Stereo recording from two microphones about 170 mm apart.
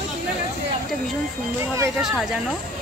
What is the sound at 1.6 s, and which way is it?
Speech, 15° right (ahead or behind).